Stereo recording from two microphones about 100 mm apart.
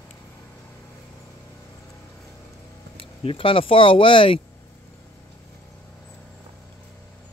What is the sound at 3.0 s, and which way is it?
Speech, 65° left (ahead or behind).